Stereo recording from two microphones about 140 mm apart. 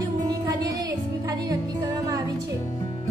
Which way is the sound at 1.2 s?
25° right (ahead or behind).